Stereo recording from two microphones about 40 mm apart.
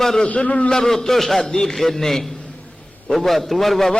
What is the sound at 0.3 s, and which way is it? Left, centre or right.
Speech, left.